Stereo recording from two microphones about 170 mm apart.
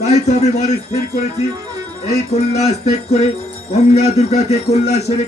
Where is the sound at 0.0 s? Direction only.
40° left (ahead or behind).